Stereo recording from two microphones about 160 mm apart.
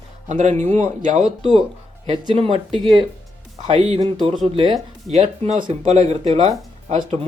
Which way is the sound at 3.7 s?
40° right (ahead or behind).